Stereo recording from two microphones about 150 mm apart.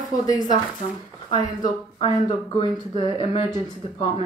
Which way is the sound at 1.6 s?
35° left (ahead or behind).